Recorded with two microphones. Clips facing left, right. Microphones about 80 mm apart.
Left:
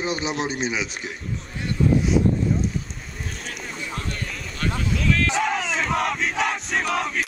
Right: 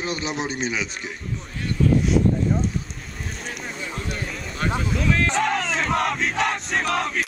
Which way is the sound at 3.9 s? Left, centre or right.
Centre.